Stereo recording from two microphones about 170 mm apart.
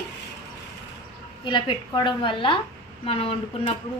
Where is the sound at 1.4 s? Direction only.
30° left (ahead or behind).